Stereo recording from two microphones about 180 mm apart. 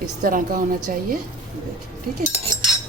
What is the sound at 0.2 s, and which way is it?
Speech, 50° right (ahead or behind).